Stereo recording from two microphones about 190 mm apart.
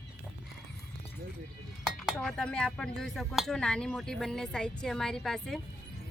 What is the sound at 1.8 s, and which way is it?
Speech, centre (ahead or behind).